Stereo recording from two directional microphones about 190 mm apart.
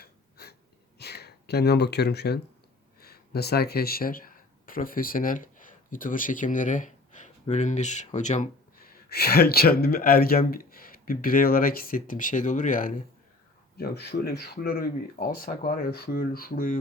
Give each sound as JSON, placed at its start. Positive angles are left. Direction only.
{"t": 0.0, "sound": "a sound", "side_deg": 55}
{"t": 0.9, "sound": "speech", "side_deg": 60}
{"t": 9.0, "sound": "speech", "side_deg": 55}
{"t": 13.7, "sound": "speech", "side_deg": 55}